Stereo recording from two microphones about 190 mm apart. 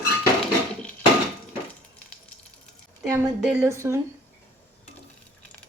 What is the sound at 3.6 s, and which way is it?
Speech, 15° right (ahead or behind).